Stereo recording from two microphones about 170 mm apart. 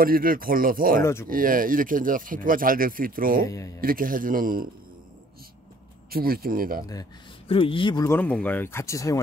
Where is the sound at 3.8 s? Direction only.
55° right (ahead or behind).